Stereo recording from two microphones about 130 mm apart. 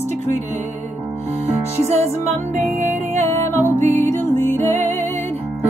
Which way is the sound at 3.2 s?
15° left (ahead or behind).